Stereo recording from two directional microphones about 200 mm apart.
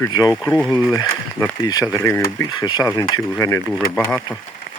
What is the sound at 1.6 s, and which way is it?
Speech, 20° left (ahead or behind).